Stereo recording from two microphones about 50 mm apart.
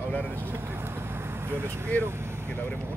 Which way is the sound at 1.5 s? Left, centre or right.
Right.